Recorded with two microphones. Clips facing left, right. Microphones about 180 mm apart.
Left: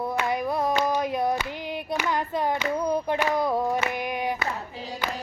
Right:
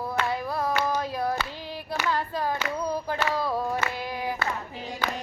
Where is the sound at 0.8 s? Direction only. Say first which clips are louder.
Left 3 dB; 15° left (ahead or behind).